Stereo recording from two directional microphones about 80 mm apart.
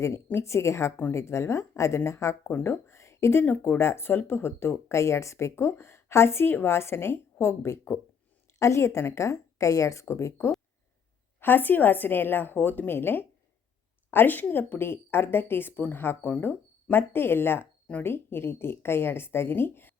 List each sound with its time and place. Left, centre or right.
0.0 s speech: left
2.6 s a sound: left
3.4 s speech: left
11.3 s a woman's voice: left